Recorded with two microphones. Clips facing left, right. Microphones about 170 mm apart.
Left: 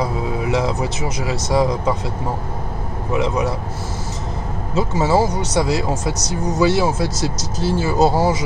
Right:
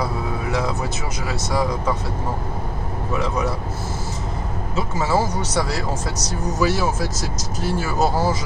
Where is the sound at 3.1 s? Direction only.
20° left (ahead or behind).